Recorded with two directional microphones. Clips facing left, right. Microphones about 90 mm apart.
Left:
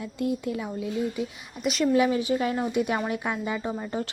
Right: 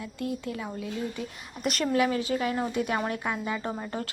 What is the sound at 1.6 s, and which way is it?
Speech, centre (ahead or behind).